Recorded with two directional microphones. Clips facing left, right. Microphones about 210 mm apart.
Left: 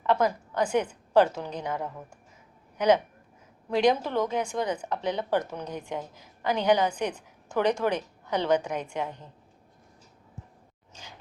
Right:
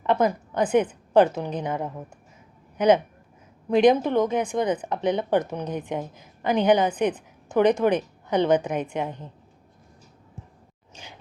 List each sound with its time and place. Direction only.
0.0 s a woman's voice: 20° right (ahead or behind)